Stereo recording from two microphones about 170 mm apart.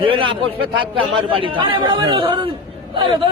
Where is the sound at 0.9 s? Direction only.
30° right (ahead or behind).